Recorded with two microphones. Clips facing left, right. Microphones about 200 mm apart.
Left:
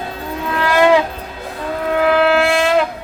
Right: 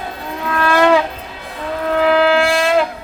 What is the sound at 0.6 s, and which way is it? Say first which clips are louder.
Wind instrument: even; 15° left (ahead or behind).